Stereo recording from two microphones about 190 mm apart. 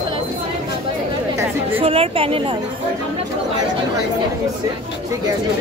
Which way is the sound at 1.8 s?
30° right (ahead or behind).